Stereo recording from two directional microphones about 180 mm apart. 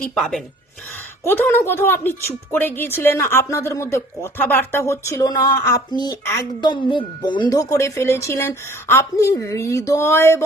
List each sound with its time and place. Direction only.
0.0 s a woman's voice: 5° left (ahead or behind)